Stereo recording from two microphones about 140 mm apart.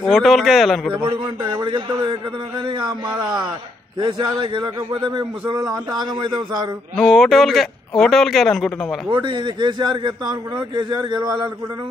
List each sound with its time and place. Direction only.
0.0 s speech: centre (ahead or behind)
1.0 s a man's voice: 35° right (ahead or behind)
7.0 s speech: centre (ahead or behind)
9.1 s a man's voice: 35° right (ahead or behind)